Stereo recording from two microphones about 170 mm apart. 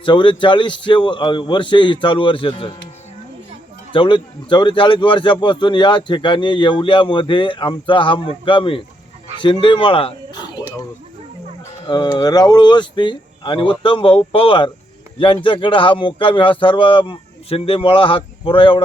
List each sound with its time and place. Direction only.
0.0 s a man's voice: 30° left (ahead or behind)
3.9 s a man's voice: 30° left (ahead or behind)
11.9 s a man's voice: 25° left (ahead or behind)